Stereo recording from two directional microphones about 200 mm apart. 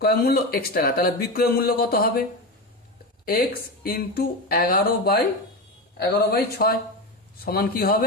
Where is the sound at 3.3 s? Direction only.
50° left (ahead or behind).